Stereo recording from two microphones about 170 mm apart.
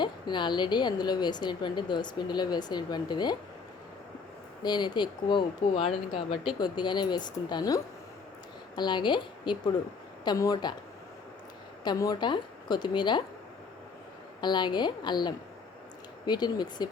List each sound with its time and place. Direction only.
0.0 s a woman's voice: 25° left (ahead or behind)
4.6 s a woman's voice: 25° left (ahead or behind)
11.8 s a woman's voice: 25° left (ahead or behind)
14.4 s a woman's voice: 25° left (ahead or behind)